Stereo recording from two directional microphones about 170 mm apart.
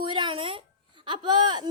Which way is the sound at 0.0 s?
30° right (ahead or behind).